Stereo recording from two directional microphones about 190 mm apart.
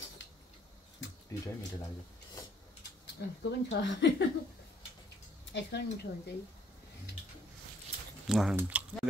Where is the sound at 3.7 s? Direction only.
70° left (ahead or behind).